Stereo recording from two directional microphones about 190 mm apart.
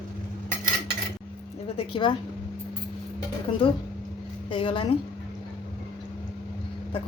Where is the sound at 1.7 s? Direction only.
25° left (ahead or behind).